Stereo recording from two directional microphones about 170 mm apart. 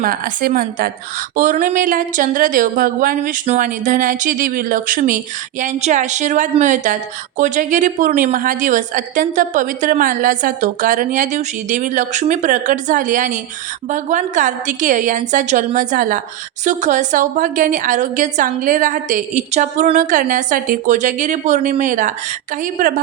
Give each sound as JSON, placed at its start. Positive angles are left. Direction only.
{"t": 0.0, "sound": "a woman's voice", "side_deg": -55}